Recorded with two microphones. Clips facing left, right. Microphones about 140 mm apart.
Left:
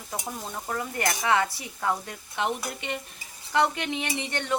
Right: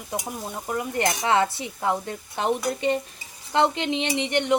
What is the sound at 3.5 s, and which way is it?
Speech, 25° right (ahead or behind).